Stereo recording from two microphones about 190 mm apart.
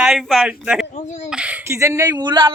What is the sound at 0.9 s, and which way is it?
Speech, 40° left (ahead or behind).